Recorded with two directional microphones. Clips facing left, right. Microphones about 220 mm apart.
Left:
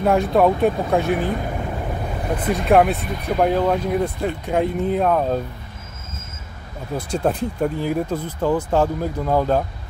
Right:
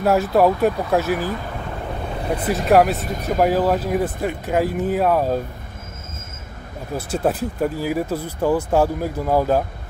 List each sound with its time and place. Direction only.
0.0 s speech: 5° right (ahead or behind)
2.3 s speech: 5° right (ahead or behind)
3.0 s speech: 45° right (ahead or behind)
3.3 s speech: 5° right (ahead or behind)
7.0 s speech: 5° right (ahead or behind)